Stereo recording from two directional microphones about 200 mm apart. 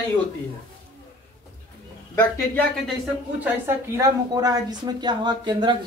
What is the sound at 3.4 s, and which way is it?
A woman's voice, 15° right (ahead or behind).